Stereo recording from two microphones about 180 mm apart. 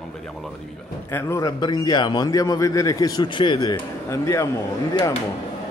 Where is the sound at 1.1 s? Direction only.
15° left (ahead or behind).